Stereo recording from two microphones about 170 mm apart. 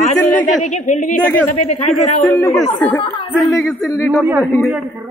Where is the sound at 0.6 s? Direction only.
45° left (ahead or behind).